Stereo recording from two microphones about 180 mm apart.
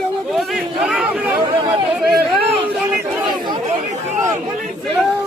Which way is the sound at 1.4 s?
25° right (ahead or behind).